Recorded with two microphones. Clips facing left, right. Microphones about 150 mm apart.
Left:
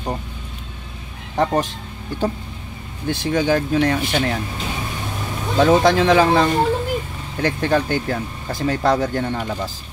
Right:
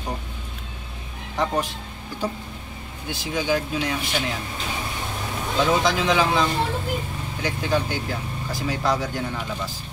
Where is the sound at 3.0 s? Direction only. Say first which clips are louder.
Left 7 dB; 50° left (ahead or behind).